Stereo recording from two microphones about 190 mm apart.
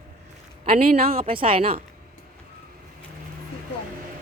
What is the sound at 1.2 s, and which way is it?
Speech, 30° right (ahead or behind).